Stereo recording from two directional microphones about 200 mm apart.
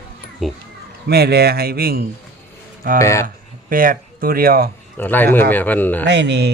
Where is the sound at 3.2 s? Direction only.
45° right (ahead or behind).